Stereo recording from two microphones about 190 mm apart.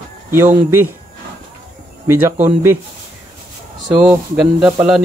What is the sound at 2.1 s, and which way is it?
Speech, 15° right (ahead or behind).